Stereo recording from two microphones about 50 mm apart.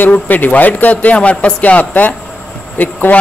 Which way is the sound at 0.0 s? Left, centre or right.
Left.